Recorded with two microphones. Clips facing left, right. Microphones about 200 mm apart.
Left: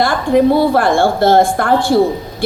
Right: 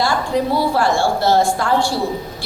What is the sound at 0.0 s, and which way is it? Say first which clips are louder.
A woman's voice: left 7 dB; 55° left (ahead or behind).